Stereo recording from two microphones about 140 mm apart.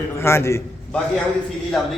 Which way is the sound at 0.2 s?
20° left (ahead or behind).